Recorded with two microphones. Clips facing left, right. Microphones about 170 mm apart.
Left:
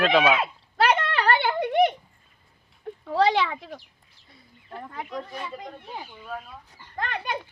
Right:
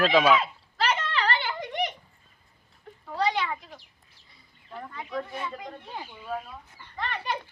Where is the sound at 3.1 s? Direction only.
90° left.